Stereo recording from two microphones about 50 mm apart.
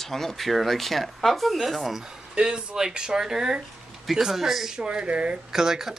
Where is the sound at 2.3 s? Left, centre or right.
Centre.